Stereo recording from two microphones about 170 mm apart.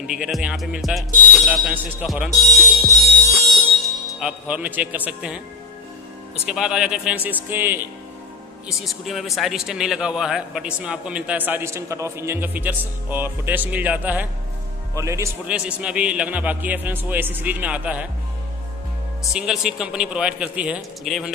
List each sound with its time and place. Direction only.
0.0 s speech: 5° right (ahead or behind)
3.3 s music: centre (ahead or behind)
6.5 s speech: 5° right (ahead or behind)
8.6 s speech: centre (ahead or behind); by 15.5 s 15° right (ahead or behind)
15.5 s speech: 5° right (ahead or behind)
19.3 s speech: 5° right (ahead or behind)